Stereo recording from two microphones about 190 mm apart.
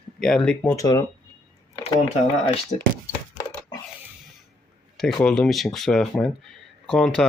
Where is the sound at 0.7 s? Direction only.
20° left (ahead or behind).